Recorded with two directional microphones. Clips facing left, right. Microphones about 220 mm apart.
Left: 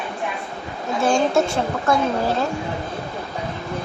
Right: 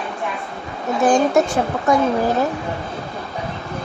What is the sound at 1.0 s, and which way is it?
Speech, 20° right (ahead or behind).